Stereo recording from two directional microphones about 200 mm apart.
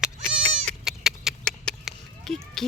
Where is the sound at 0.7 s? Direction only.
5° right (ahead or behind).